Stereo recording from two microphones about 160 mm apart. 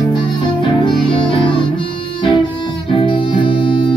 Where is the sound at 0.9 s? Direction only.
30° left (ahead or behind).